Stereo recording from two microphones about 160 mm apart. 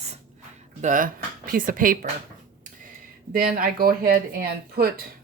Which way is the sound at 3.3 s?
65° right (ahead or behind).